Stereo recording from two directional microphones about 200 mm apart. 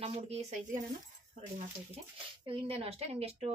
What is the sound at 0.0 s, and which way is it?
Speech, 30° right (ahead or behind).